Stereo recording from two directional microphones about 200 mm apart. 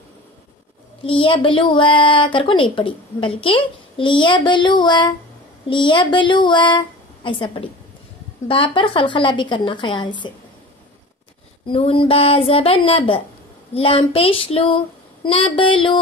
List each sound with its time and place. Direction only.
1.0 s a woman's voice: 25° left (ahead or behind)
11.6 s a woman's voice: 30° left (ahead or behind)